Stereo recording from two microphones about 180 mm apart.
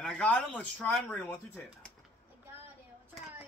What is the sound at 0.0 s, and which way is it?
A man's voice, 5° left (ahead or behind).